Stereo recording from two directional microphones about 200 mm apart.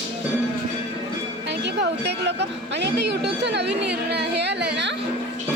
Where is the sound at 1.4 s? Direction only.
60° right (ahead or behind).